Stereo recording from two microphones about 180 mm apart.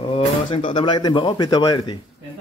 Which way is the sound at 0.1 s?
30° left (ahead or behind).